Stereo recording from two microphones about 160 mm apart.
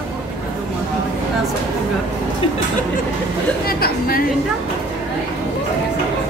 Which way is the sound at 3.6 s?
70° left (ahead or behind).